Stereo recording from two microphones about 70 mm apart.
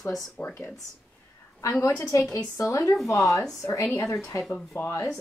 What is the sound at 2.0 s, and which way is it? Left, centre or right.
Speech, left.